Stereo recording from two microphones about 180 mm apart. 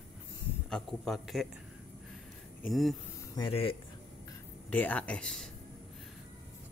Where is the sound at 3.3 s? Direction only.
30° left (ahead or behind).